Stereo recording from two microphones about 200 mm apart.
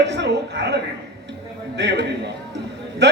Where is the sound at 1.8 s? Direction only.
60° right (ahead or behind).